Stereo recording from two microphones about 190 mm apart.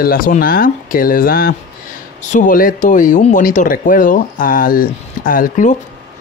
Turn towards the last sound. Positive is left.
turn(degrees=45)  # may be behind; listen again after turning